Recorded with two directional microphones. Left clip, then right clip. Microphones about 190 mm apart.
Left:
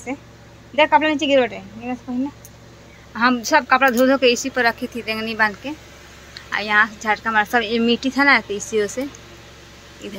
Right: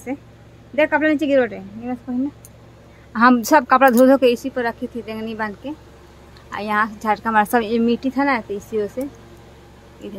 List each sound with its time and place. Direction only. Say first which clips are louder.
0.7 s speech: left 2 dB; 25° right (ahead or behind)
3.1 s speech: right 3 dB; 45° right (ahead or behind); by 9.0 s 15° right (ahead or behind)
10.0 s speech: left 1 dB; 20° right (ahead or behind)